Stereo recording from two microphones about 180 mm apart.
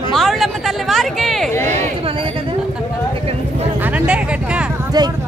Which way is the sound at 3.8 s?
10° right (ahead or behind).